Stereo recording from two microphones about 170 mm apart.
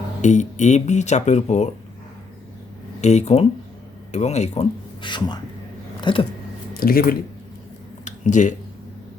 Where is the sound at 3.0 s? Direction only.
40° left (ahead or behind).